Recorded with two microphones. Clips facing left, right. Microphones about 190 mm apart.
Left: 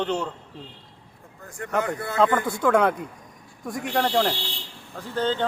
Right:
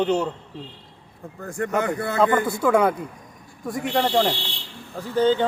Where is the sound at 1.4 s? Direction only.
55° right (ahead or behind).